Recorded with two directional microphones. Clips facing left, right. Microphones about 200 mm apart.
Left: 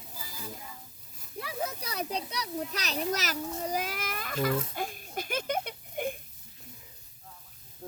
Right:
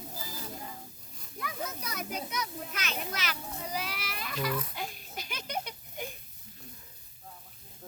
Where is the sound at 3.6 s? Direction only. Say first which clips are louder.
Left 2 dB; 45° left (ahead or behind).